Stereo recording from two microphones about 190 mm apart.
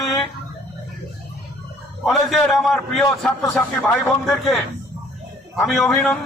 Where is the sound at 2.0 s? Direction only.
Centre (ahead or behind).